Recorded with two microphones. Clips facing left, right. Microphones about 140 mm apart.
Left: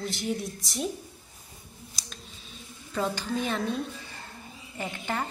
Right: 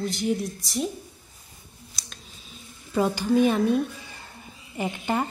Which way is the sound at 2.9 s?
15° right (ahead or behind).